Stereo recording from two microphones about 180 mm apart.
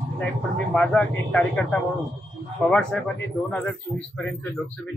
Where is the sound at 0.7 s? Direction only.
10° left (ahead or behind).